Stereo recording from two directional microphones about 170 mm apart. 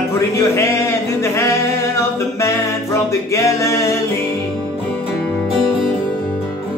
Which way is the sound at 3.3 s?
15° left (ahead or behind).